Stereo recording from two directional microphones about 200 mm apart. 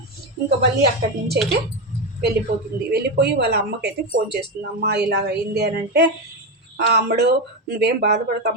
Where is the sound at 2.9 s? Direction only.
55° right (ahead or behind).